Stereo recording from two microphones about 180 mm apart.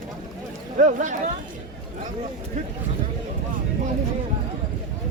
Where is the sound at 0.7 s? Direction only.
45° right (ahead or behind).